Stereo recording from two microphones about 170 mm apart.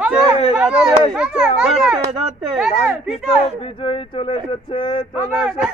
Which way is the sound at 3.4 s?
30° left (ahead or behind).